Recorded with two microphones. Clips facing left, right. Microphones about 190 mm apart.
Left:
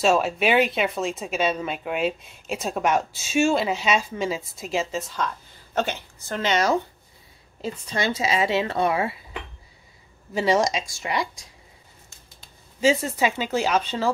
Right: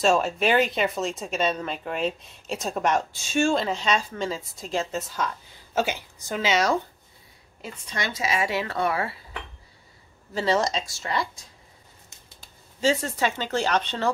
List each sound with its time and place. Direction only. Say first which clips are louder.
0.0 s speech: left 1 dB; centre (ahead or behind)
7.6 s speech: left 6 dB; 25° left (ahead or behind)
10.3 s speech: left 3 dB; 15° left (ahead or behind)
12.8 s speech: left 3 dB; 10° left (ahead or behind)